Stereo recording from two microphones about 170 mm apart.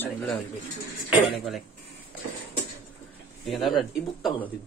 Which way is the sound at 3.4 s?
Centre (ahead or behind).